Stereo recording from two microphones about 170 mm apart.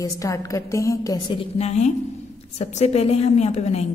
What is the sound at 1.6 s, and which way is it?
A woman's voice, 40° left (ahead or behind).